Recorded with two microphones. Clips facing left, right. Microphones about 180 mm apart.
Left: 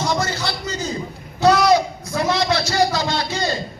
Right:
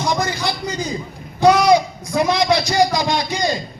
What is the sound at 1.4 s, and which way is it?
A man's voice, 15° right (ahead or behind).